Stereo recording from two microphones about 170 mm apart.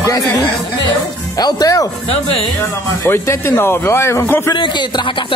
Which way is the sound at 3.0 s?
15° left (ahead or behind).